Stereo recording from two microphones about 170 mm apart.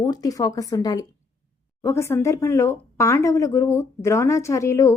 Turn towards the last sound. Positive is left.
turn(degrees=20)  # may be behind; listen again after turning